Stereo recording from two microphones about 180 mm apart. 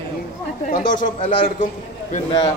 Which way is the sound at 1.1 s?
30° left (ahead or behind).